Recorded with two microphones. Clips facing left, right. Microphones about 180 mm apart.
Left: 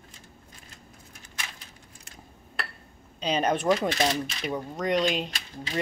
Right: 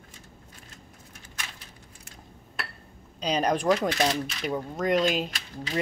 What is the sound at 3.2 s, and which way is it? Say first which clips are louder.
Speech: even; 5° left (ahead or behind).